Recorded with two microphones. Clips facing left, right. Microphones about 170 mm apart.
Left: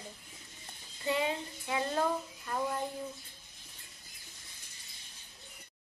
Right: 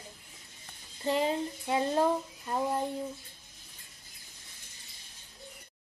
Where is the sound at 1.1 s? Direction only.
35° right (ahead or behind).